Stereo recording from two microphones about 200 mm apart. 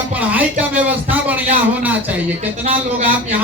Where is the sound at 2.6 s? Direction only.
35° right (ahead or behind).